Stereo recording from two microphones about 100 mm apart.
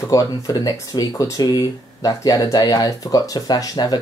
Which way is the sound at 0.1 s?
35° left (ahead or behind).